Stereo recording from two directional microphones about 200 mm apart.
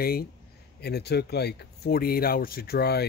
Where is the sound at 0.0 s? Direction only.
50° left (ahead or behind).